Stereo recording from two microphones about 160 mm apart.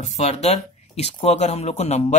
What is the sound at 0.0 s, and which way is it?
Speech, 40° left (ahead or behind).